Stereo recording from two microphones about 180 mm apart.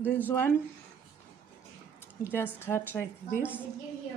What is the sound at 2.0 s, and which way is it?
Speech, 10° left (ahead or behind).